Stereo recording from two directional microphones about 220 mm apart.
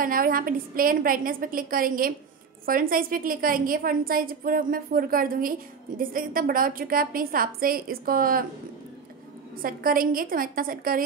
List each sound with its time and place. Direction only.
0.0 s a woman's voice: 40° right (ahead or behind)
9.6 s a woman's voice: 40° right (ahead or behind)